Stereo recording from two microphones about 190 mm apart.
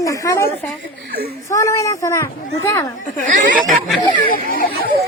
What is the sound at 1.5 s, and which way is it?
A child's voice, 15° left (ahead or behind).